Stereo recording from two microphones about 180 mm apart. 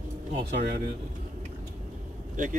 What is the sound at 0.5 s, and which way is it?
Speech, 60° right (ahead or behind).